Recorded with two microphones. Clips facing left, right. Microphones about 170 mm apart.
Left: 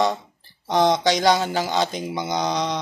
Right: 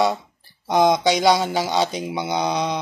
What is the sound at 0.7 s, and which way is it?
A man's voice, 10° right (ahead or behind).